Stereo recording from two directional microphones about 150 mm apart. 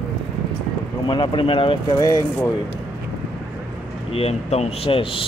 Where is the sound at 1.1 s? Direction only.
35° left (ahead or behind).